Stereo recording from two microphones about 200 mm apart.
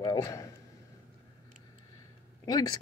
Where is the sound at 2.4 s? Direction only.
20° left (ahead or behind).